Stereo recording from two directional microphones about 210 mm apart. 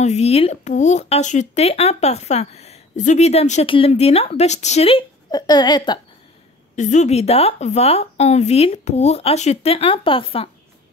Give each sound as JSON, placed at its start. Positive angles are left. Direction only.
{"t": 0.0, "sound": "speech", "side_deg": 30}
{"t": 6.7, "sound": "speech", "side_deg": 35}